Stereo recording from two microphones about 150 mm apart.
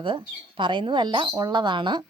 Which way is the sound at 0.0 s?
35° right (ahead or behind).